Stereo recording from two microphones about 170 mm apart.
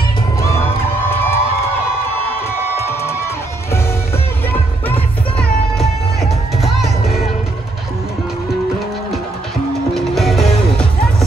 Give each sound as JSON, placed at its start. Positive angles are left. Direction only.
{"t": 1.1, "sound": "music", "side_deg": 15}
{"t": 2.4, "sound": "music", "side_deg": 15}
{"t": 6.6, "sound": "music", "side_deg": 0}
{"t": 9.9, "sound": "music", "side_deg": 0}